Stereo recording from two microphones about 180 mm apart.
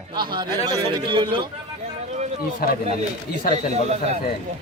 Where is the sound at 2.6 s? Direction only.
55° left (ahead or behind).